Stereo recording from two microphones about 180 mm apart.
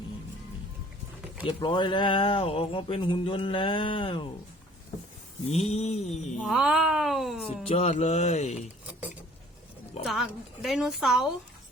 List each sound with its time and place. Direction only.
1.5 s speech: 25° left (ahead or behind)
5.5 s speech: 35° left (ahead or behind)
6.4 s a woman's voice: 5° right (ahead or behind)
7.7 s speech: 35° left (ahead or behind)
10.0 s a woman's voice: centre (ahead or behind)